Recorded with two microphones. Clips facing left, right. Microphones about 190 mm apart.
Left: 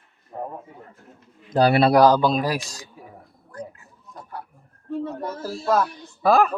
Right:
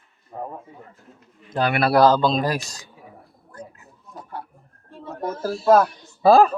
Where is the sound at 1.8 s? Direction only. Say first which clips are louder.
Right 2 dB; 15° left (ahead or behind).